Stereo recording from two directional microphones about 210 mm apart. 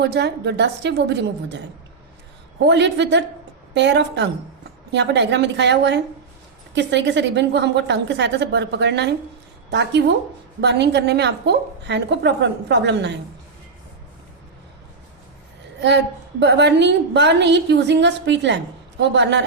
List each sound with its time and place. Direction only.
0.0 s a woman's voice: 50° right (ahead or behind)
2.6 s a woman's voice: 55° right (ahead or behind)
16.4 s a woman's voice: 55° right (ahead or behind)